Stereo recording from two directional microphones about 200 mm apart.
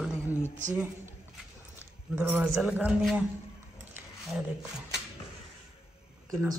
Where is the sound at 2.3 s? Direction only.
5° right (ahead or behind).